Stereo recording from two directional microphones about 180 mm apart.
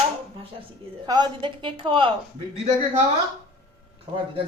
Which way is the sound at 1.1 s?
25° right (ahead or behind).